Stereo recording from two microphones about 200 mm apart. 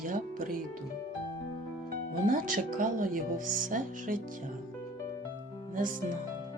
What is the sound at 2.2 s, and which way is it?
Speech, 45° right (ahead or behind).